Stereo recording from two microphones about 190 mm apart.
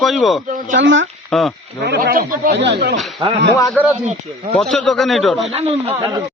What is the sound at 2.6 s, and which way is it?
Speech, 65° right (ahead or behind).